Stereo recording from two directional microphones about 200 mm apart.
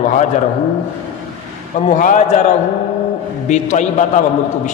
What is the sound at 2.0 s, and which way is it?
Speech, 40° left (ahead or behind).